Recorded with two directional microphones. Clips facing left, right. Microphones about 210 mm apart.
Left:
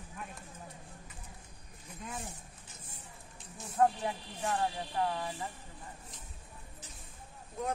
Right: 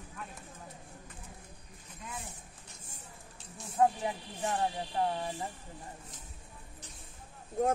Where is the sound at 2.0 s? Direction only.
55° left (ahead or behind).